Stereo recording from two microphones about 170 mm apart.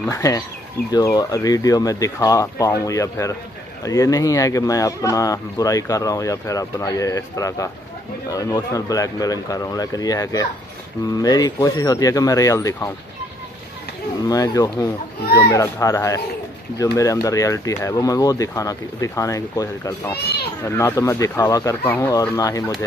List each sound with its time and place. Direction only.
0.1 s speech: 20° left (ahead or behind)
14.2 s speech: 20° left (ahead or behind)